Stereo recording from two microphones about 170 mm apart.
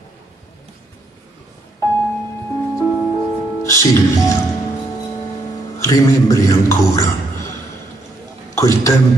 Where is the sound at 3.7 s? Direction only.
20° left (ahead or behind).